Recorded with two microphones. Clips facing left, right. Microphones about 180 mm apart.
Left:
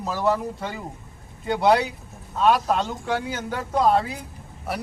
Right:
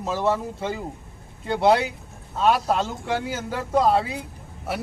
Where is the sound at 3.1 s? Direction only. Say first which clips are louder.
Left 1 dB; 25° right (ahead or behind).